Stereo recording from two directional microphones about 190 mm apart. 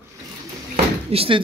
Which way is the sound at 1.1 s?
30° right (ahead or behind).